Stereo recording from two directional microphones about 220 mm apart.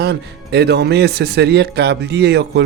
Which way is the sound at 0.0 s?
50° right (ahead or behind).